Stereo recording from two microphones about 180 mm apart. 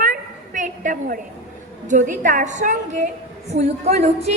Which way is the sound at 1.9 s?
45° right (ahead or behind).